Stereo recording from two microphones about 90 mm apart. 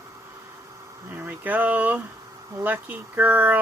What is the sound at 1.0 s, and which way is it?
Speech, 25° right (ahead or behind).